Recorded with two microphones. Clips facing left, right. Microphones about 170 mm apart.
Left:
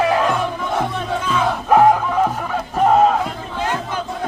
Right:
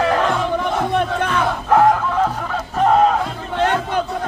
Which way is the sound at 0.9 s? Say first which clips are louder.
Right 3 dB; 65° right (ahead or behind).